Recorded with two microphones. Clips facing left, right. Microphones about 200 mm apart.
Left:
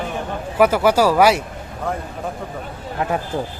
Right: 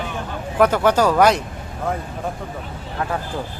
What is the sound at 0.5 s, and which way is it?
Speech, 10° left (ahead or behind).